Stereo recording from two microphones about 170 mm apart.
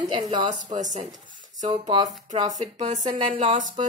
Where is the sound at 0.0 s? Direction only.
25° right (ahead or behind).